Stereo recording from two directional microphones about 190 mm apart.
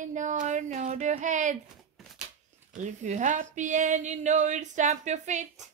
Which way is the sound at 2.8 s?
40° right (ahead or behind).